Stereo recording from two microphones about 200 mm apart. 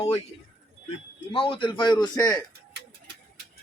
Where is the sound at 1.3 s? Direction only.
25° left (ahead or behind).